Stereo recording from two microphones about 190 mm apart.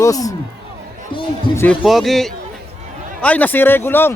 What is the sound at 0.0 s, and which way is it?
Speech, 20° left (ahead or behind).